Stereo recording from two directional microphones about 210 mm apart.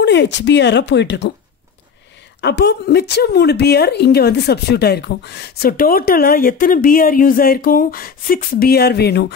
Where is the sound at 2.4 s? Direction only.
50° left (ahead or behind).